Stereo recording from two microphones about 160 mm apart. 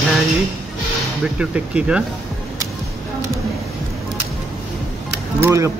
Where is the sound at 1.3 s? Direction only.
5° right (ahead or behind).